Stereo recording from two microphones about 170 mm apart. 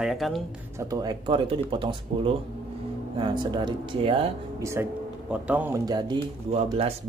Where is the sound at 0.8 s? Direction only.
20° right (ahead or behind).